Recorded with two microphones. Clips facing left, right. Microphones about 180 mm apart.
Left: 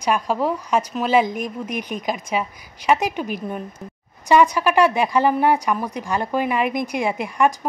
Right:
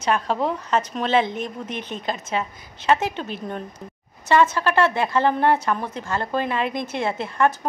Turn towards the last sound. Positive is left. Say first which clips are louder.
# left 2 dB
turn(degrees=15)  # may be behind; listen again after turning